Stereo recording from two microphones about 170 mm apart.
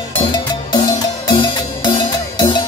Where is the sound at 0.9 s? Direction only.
25° left (ahead or behind).